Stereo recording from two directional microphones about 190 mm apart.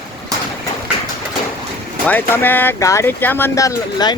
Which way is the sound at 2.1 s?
10° left (ahead or behind).